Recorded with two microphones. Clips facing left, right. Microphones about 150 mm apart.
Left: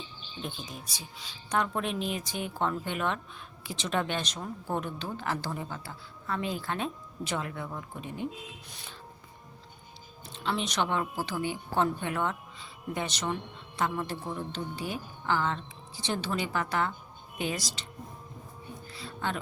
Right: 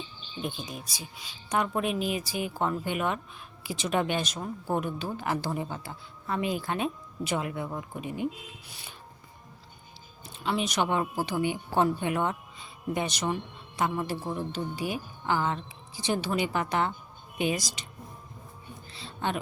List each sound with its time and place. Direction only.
0.4 s speech: 10° right (ahead or behind)
10.3 s speech: 10° right (ahead or behind)
18.9 s a sound: 25° right (ahead or behind)